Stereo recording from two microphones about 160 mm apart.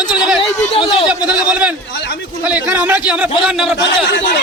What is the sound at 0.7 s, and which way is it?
Speech, 30° left (ahead or behind).